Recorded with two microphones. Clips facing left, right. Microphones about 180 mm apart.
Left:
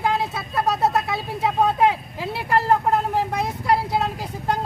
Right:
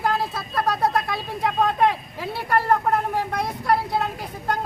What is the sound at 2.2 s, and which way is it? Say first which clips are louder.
Speech: left 1 dB; 25° left (ahead or behind).